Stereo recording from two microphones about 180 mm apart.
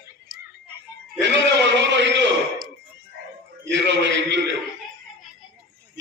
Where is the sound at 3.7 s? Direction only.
80° right.